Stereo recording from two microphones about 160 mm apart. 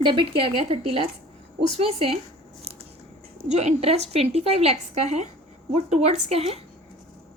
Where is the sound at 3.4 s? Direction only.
45° right (ahead or behind).